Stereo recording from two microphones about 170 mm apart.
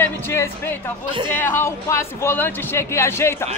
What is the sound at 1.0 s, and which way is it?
Speech, 30° right (ahead or behind).